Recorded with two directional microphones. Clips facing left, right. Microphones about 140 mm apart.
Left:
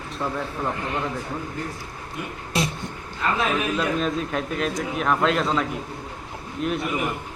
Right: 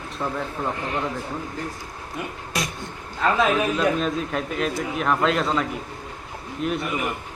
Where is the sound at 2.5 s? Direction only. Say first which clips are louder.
Left 4 dB; 25° left (ahead or behind).